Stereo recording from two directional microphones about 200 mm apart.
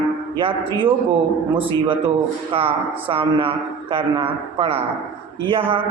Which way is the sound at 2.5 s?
25° right (ahead or behind).